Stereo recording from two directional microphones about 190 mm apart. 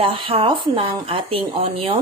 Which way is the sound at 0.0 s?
30° right (ahead or behind).